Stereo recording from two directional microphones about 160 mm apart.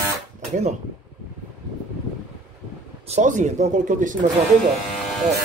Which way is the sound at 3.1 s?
50° right (ahead or behind).